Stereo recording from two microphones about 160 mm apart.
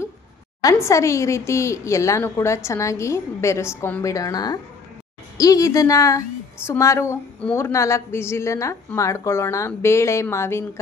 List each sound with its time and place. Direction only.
0.6 s a woman's voice: 20° left (ahead or behind)